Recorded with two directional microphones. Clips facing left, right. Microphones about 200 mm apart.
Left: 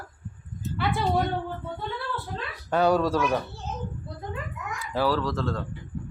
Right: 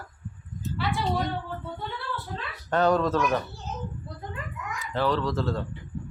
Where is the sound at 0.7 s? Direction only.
55° left (ahead or behind).